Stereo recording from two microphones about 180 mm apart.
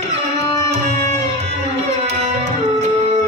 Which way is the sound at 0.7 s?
35° right (ahead or behind).